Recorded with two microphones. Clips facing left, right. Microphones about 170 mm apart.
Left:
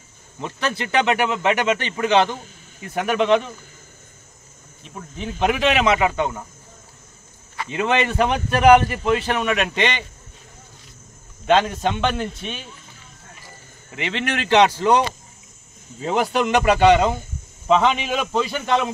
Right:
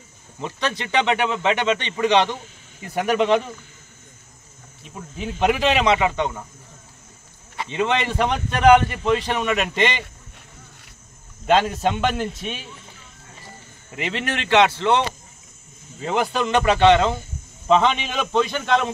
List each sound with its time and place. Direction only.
0.4 s a man's voice: 5° left (ahead or behind)
4.8 s a man's voice: 5° right (ahead or behind)
7.7 s a man's voice: 5° left (ahead or behind)
11.4 s a man's voice: 5° right (ahead or behind)
13.9 s a man's voice: centre (ahead or behind)
14.4 s a man's voice: 40° left (ahead or behind)
16.1 s a man's voice: 10° left (ahead or behind)